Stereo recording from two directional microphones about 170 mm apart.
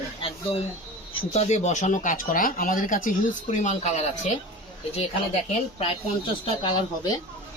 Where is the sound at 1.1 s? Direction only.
40° left (ahead or behind).